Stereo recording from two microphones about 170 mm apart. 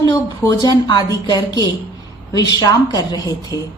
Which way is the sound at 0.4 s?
25° left (ahead or behind).